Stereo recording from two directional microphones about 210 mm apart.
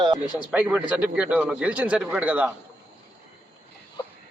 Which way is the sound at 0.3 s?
5° right (ahead or behind).